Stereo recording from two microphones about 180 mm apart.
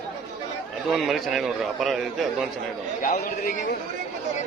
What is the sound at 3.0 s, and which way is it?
Speech, 50° left (ahead or behind).